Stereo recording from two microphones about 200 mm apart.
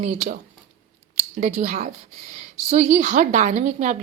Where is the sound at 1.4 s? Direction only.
40° right (ahead or behind).